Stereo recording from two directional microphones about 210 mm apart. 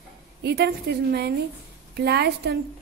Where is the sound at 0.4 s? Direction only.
55° right (ahead or behind).